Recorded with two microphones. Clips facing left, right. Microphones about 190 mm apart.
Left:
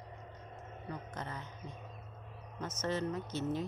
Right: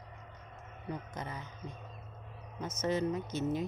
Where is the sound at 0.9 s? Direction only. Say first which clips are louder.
Right 3 dB; 15° right (ahead or behind).